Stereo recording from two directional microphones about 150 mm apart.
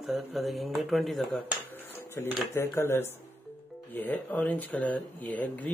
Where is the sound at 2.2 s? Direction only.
20° left (ahead or behind).